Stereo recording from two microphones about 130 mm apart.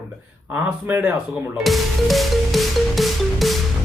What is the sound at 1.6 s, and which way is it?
Music, centre (ahead or behind).